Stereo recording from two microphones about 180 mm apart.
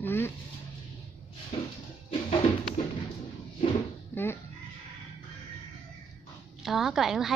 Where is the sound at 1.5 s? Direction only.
30° left (ahead or behind).